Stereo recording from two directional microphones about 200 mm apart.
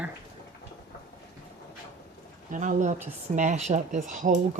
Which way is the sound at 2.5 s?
40° right (ahead or behind).